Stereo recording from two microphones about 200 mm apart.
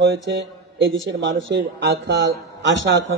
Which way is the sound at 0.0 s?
60° right (ahead or behind).